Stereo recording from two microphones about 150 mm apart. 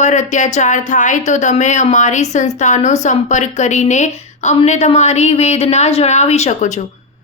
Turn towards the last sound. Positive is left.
turn(degrees=50)  # may be behind; listen again after turning